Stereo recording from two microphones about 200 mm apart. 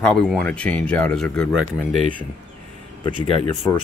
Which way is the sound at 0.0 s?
5° left (ahead or behind).